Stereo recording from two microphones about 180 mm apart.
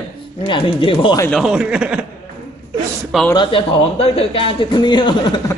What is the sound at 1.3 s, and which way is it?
Speech, centre (ahead or behind).